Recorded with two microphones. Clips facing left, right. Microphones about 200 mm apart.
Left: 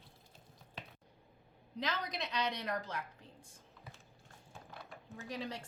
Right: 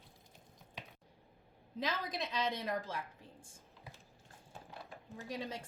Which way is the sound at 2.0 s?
Centre (ahead or behind).